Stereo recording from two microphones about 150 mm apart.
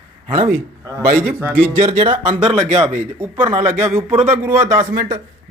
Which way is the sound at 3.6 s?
15° right (ahead or behind).